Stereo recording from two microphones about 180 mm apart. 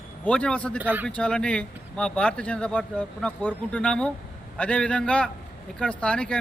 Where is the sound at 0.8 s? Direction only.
10° right (ahead or behind).